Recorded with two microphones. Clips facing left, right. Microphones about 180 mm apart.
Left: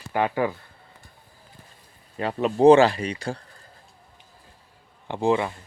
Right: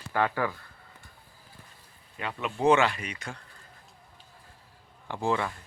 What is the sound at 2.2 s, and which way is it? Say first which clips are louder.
Speech: left 10 dB; 35° left (ahead or behind).